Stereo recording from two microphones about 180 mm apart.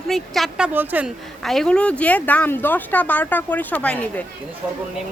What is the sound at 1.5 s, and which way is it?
Speech, 5° left (ahead or behind).